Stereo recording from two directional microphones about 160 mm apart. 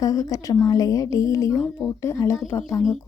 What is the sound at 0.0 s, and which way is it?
A woman's voice, 20° left (ahead or behind).